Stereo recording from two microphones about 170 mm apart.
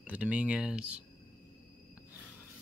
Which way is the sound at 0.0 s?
10° right (ahead or behind).